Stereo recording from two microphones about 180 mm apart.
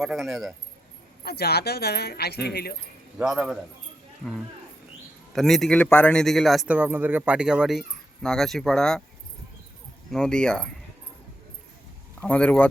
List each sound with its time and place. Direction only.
0.0 s a man's voice: centre (ahead or behind)
1.2 s speech: 60° left (ahead or behind)
3.2 s a man's voice: 5° right (ahead or behind)
5.3 s a man's voice: centre (ahead or behind)
10.1 s a man's voice: 5° left (ahead or behind)
12.2 s speech: 10° left (ahead or behind)